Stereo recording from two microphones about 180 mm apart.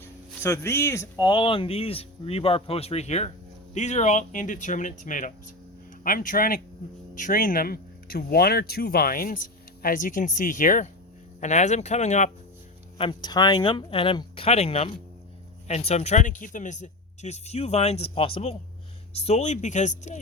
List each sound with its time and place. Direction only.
0.4 s speech: 15° left (ahead or behind); by 12.3 s 40° left (ahead or behind)
13.0 s speech: 25° left (ahead or behind); by 20.1 s 40° left (ahead or behind)